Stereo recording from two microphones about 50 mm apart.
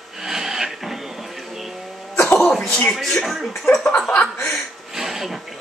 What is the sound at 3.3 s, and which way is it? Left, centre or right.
Speech, centre.